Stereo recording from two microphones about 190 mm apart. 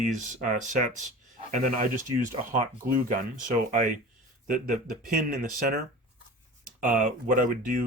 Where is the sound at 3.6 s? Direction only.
45° right (ahead or behind).